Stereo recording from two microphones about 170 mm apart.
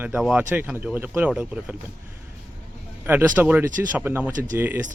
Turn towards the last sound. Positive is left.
turn(degrees=-10)  # may be behind; listen again after turning